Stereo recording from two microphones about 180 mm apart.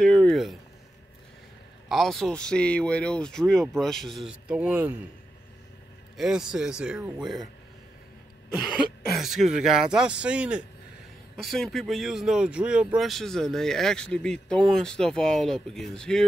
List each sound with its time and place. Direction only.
0.0 s a sound: 5° left (ahead or behind)
1.9 s speech: centre (ahead or behind)
6.1 s speech: 5° right (ahead or behind)
8.6 s speech: centre (ahead or behind)